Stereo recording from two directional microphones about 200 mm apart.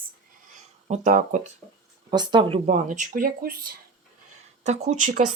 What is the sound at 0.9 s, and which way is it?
Speech, 40° right (ahead or behind).